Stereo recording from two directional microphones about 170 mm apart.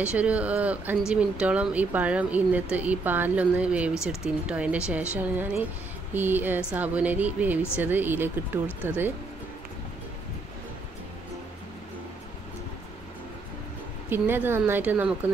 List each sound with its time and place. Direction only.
0.0 s speech: 5° right (ahead or behind)
14.1 s speech: 10° right (ahead or behind)